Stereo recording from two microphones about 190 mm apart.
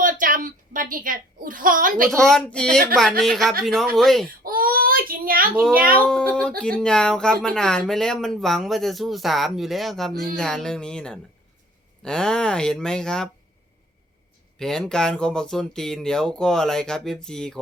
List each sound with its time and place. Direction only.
0.0 s a sound: 45° right (ahead or behind)
2.0 s speech: centre (ahead or behind)
4.4 s a sound: 50° right (ahead or behind)
5.7 s speech: 50° right (ahead or behind)
6.0 s speech: 5° left (ahead or behind)
14.6 s speech: 5° left (ahead or behind)